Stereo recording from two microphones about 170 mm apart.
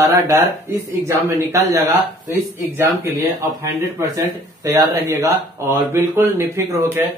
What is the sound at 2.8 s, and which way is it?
Speech, 15° right (ahead or behind).